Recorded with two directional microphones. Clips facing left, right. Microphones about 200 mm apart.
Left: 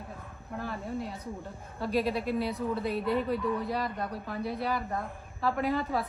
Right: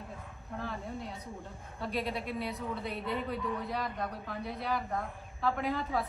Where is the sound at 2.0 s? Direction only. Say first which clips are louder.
Left 7 dB; 5° left (ahead or behind).